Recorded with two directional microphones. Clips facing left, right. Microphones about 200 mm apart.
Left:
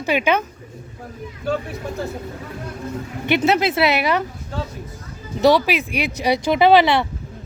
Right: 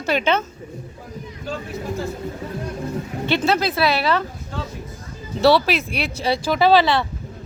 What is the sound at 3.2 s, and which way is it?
Speech, 20° left (ahead or behind).